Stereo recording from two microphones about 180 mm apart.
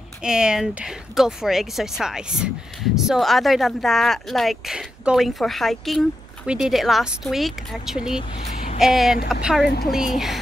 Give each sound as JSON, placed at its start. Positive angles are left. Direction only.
{"t": 0.2, "sound": "speech", "side_deg": -5}
{"t": 8.2, "sound": "speech", "side_deg": 30}
{"t": 8.7, "sound": "speech", "side_deg": 0}